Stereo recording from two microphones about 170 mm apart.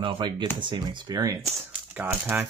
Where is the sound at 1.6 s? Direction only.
10° right (ahead or behind).